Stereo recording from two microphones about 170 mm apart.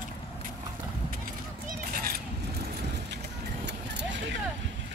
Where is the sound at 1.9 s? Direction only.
55° right (ahead or behind).